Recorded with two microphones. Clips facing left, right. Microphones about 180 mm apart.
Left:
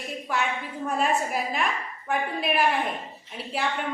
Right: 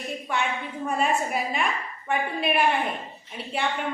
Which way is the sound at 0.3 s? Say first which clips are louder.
Even; 5° left (ahead or behind).